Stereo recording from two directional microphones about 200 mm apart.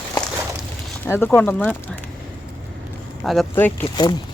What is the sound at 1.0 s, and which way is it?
Speech, 10° left (ahead or behind).